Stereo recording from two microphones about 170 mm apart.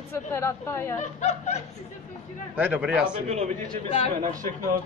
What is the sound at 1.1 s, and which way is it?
Speech, 40° left (ahead or behind).